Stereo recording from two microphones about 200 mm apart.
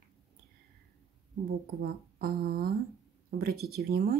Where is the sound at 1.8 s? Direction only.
50° right (ahead or behind).